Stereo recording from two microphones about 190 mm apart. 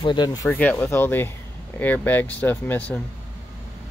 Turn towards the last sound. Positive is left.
turn(degrees=10)  # may be behind; listen again after turning